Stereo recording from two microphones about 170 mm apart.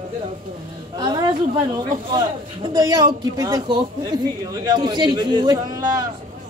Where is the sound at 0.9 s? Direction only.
25° right (ahead or behind).